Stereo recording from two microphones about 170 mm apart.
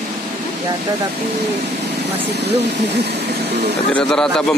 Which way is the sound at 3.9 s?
5° left (ahead or behind).